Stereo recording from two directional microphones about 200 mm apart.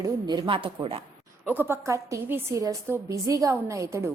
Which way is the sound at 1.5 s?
10° right (ahead or behind).